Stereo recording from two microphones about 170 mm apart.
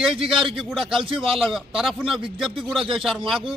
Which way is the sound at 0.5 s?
Centre (ahead or behind).